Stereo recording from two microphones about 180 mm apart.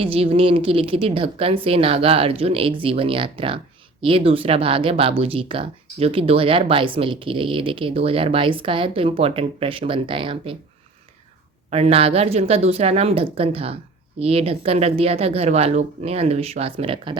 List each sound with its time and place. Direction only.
0.0 s a woman's voice: 30° right (ahead or behind)
11.7 s a woman's voice: 35° right (ahead or behind)